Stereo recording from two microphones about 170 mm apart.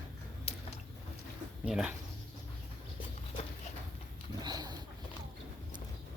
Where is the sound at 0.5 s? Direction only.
35° left (ahead or behind).